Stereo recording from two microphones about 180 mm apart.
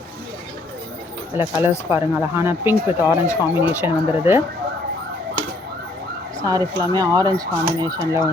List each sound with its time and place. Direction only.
1.4 s speech: 10° right (ahead or behind)
6.4 s speech: 20° right (ahead or behind)